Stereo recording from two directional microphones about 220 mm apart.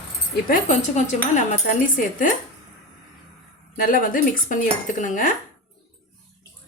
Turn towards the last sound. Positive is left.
turn(degrees=35)  # may be behind; listen again after turning